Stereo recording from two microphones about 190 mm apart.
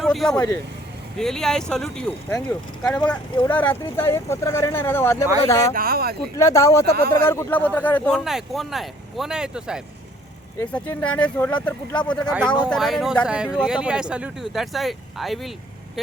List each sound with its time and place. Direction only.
0.0 s speech: centre (ahead or behind)
5.7 s speech: 50° right (ahead or behind)
6.3 s speech: 15° left (ahead or behind); by 9.8 s 5° right (ahead or behind)
10.6 s speech: 10° left (ahead or behind)